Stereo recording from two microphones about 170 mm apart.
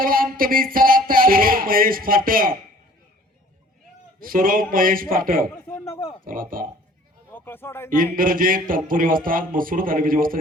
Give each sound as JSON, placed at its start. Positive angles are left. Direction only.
{"t": 0.0, "sound": "speech", "side_deg": -55}
{"t": 4.2, "sound": "speech", "side_deg": -55}
{"t": 5.6, "sound": "speech", "side_deg": 15}
{"t": 6.2, "sound": "speech", "side_deg": -55}
{"t": 7.3, "sound": "speech", "side_deg": 15}
{"t": 8.1, "sound": "speech", "side_deg": -55}